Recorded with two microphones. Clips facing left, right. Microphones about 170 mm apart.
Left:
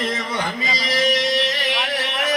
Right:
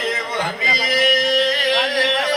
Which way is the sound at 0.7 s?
50° right (ahead or behind).